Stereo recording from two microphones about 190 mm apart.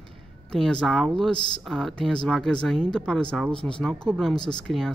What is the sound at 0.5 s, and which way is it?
Speech, 5° left (ahead or behind).